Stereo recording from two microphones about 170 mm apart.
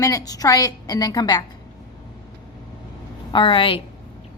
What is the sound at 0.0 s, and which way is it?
A woman's voice, 20° left (ahead or behind).